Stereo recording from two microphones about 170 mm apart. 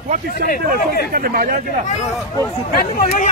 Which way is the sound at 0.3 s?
60° left (ahead or behind).